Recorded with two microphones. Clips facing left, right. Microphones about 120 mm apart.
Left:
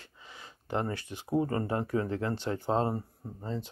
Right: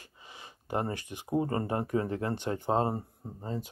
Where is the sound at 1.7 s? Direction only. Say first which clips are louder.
Even; 20° right (ahead or behind).